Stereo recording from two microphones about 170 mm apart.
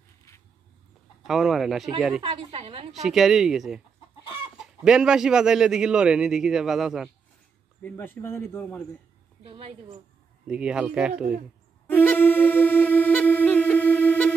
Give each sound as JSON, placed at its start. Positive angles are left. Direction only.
{"t": 1.2, "sound": "a man's voice", "side_deg": 0}
{"t": 2.2, "sound": "a woman's voice", "side_deg": -35}
{"t": 2.9, "sound": "a man's voice", "side_deg": 0}
{"t": 7.8, "sound": "speech", "side_deg": 10}
{"t": 9.5, "sound": "a woman's voice", "side_deg": -35}
{"t": 10.4, "sound": "speech", "side_deg": -5}
{"t": 11.9, "sound": "music", "side_deg": 10}